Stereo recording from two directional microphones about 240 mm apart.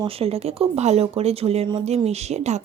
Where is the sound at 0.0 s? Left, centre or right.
Right.